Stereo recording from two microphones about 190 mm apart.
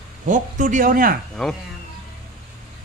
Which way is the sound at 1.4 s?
Centre (ahead or behind).